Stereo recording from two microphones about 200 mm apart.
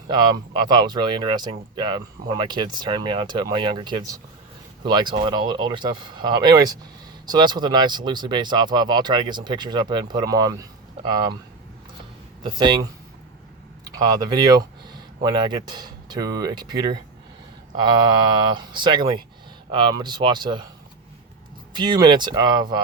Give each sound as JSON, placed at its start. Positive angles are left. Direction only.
{"t": 0.1, "sound": "speech", "side_deg": -20}
{"t": 12.4, "sound": "speech", "side_deg": -25}
{"t": 21.7, "sound": "speech", "side_deg": -20}